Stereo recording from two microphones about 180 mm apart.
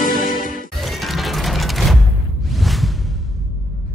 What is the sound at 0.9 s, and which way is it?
Music, centre (ahead or behind).